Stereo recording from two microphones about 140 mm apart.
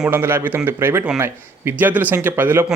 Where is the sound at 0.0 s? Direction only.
15° right (ahead or behind).